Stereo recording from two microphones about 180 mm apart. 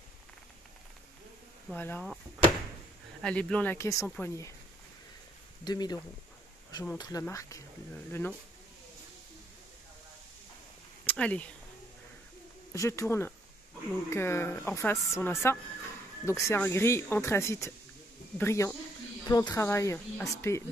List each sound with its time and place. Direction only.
1.7 s speech: 10° left (ahead or behind)
3.2 s speech: 5° left (ahead or behind)
5.6 s speech: 25° left (ahead or behind)
11.1 s speech: 5° left (ahead or behind)
12.7 s speech: 15° left (ahead or behind)